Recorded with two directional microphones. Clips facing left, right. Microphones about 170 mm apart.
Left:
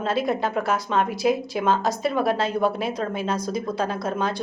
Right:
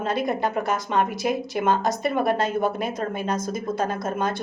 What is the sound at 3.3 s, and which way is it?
Speech, 45° right (ahead or behind).